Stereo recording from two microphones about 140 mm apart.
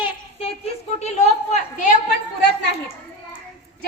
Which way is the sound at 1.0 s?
50° left (ahead or behind).